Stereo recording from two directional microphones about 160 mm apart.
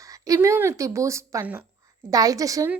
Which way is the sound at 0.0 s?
20° right (ahead or behind).